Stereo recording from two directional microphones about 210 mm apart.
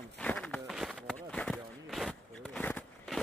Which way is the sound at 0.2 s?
5° left (ahead or behind).